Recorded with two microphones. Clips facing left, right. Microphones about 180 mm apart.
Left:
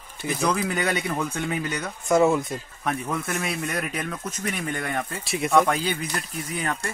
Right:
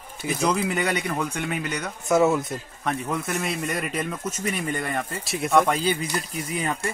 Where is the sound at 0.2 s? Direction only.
10° right (ahead or behind).